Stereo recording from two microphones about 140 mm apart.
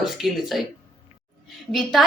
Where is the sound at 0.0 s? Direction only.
Centre (ahead or behind).